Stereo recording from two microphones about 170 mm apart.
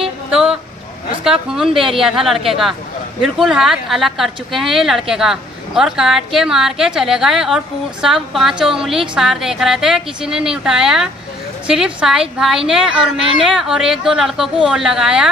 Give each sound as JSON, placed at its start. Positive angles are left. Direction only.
{"t": 0.0, "sound": "vehicle", "side_deg": -5}
{"t": 1.2, "sound": "a woman's voice", "side_deg": -5}